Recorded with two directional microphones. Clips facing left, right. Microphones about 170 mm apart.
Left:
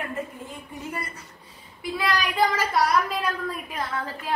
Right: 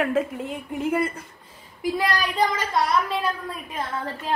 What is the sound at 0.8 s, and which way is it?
Speech, 55° right (ahead or behind).